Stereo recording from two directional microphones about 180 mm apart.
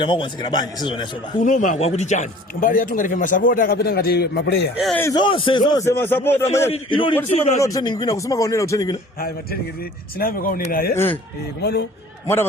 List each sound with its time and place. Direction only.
0.0 s speech: 25° left (ahead or behind)
1.5 s a man's voice: 45° left (ahead or behind); by 4.7 s 65° left (ahead or behind)
5.1 s speech: 30° left (ahead or behind)
6.7 s speech: 30° left (ahead or behind)
7.3 s a man's voice: 40° left (ahead or behind)
7.6 s speech: 20° left (ahead or behind)
10.2 s a man's voice: 55° left (ahead or behind)
10.9 s speech: 10° left (ahead or behind)
11.6 s a man's voice: 65° left (ahead or behind)